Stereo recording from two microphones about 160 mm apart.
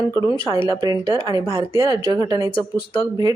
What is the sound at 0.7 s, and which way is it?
A woman's voice, 25° right (ahead or behind).